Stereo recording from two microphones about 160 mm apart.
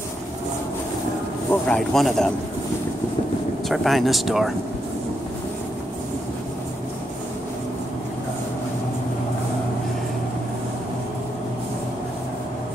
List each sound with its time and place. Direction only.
1.5 s speech: 5° left (ahead or behind)
3.6 s speech: centre (ahead or behind)